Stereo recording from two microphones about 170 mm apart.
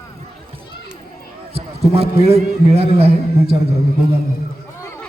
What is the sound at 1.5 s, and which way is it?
A man's voice, 35° right (ahead or behind).